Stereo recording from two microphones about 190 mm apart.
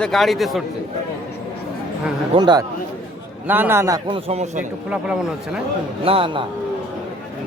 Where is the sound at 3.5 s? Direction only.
10° right (ahead or behind).